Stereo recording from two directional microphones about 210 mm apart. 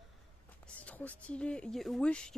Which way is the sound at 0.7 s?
5° left (ahead or behind).